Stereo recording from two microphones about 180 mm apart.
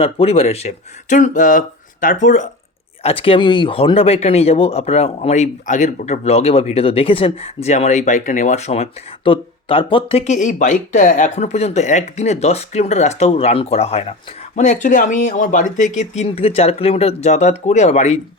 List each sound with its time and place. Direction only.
0.0 s speech: 35° left (ahead or behind)